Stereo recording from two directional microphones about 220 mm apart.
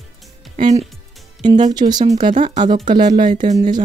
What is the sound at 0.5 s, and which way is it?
Speech, 35° right (ahead or behind).